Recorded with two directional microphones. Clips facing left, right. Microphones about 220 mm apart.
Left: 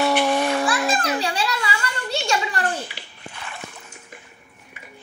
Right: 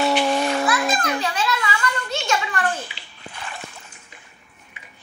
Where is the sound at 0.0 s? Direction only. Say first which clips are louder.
Even; centre (ahead or behind).